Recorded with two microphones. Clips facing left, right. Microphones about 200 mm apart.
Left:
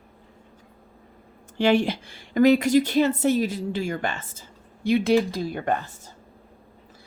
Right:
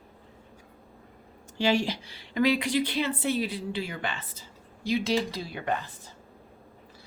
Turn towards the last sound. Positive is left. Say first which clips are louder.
# left 5 dB
turn(degrees=50)  # may be behind; listen again after turning